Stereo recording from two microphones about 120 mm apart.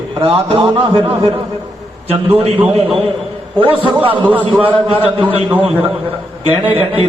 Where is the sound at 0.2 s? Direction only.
50° right (ahead or behind).